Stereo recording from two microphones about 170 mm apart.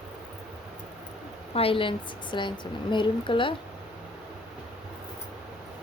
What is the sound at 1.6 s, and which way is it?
A woman's voice, 30° left (ahead or behind).